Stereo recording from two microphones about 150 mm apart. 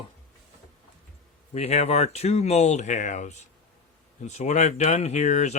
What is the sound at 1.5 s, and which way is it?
Speech, 45° left (ahead or behind).